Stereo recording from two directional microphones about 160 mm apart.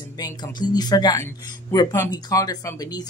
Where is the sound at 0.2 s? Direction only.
25° left (ahead or behind).